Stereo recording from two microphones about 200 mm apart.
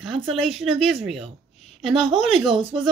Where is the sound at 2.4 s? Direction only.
25° right (ahead or behind).